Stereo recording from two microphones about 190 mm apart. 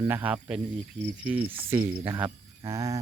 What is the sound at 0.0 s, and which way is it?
Speech, 10° right (ahead or behind).